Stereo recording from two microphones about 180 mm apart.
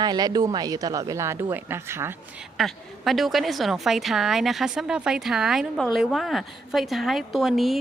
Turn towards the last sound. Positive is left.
turn(degrees=0)  # may be behind; listen again after turning